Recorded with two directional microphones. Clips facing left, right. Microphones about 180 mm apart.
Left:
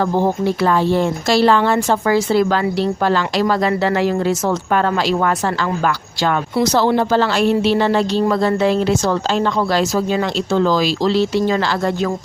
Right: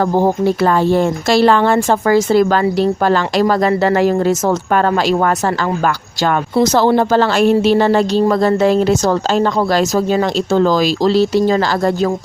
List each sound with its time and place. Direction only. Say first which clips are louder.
0.0 s speech: right 3 dB; 40° right (ahead or behind)